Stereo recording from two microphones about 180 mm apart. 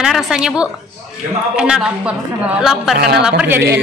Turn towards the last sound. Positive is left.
turn(degrees=-10)  # may be behind; listen again after turning